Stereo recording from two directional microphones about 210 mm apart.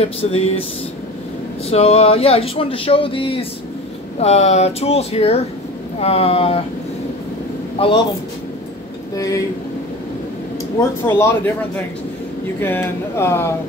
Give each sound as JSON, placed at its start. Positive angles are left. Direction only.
{"t": 0.0, "sound": "speech", "side_deg": 30}
{"t": 1.7, "sound": "speech", "side_deg": 30}
{"t": 7.8, "sound": "speech", "side_deg": 25}
{"t": 10.8, "sound": "speech", "side_deg": 10}